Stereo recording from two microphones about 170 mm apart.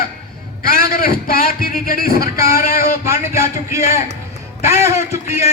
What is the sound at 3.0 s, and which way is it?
A man's voice, 15° right (ahead or behind).